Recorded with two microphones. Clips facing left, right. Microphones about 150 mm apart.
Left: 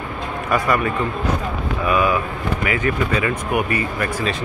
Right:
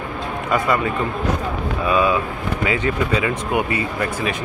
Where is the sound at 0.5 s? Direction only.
20° right (ahead or behind).